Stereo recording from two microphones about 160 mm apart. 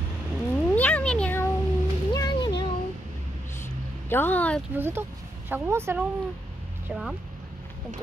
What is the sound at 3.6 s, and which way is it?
Vehicle, 15° left (ahead or behind).